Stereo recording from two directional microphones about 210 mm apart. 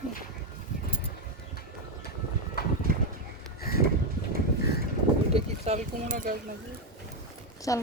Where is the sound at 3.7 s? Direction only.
45° left (ahead or behind).